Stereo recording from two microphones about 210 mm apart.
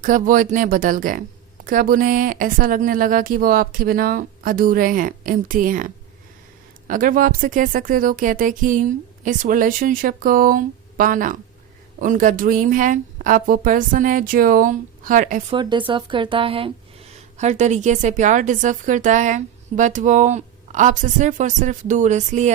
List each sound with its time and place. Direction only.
0.0 s a woman's voice: 40° right (ahead or behind)
15.9 s a woman's voice: 25° right (ahead or behind)